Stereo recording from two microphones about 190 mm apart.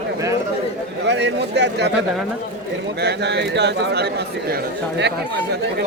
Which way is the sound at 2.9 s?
60° right (ahead or behind).